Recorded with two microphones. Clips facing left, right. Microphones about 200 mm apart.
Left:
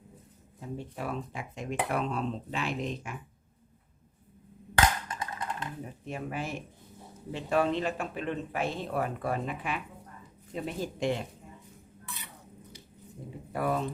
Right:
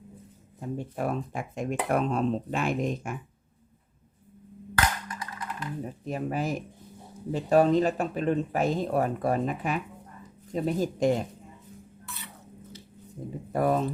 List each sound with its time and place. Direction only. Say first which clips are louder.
0.8 s speech: right 6 dB; 50° right (ahead or behind)
4.7 s wood block: left 2 dB; 25° left (ahead or behind)
6.1 s speech: right 6 dB; 40° right (ahead or behind)
13.5 s speech: right 5 dB; 40° right (ahead or behind)